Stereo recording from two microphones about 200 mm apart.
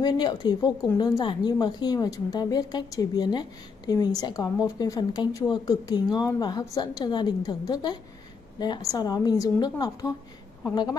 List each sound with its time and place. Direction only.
0.0 s a woman's voice: 20° left (ahead or behind)